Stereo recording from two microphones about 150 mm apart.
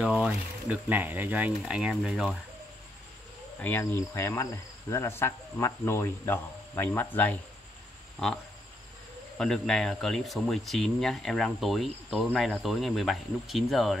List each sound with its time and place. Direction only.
0.0 s speech: 5° right (ahead or behind)
3.5 s cricket: 15° left (ahead or behind)
9.4 s speech: 5° left (ahead or behind)